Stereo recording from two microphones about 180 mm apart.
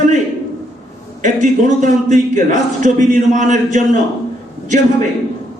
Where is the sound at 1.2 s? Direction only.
45° right (ahead or behind).